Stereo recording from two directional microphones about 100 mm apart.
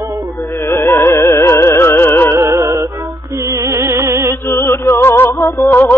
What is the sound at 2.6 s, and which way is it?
Music, 30° right (ahead or behind).